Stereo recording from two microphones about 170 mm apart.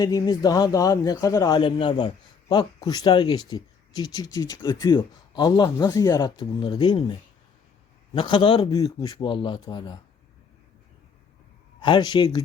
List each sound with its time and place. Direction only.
0.0 s speech: 25° left (ahead or behind)
11.8 s speech: 25° left (ahead or behind)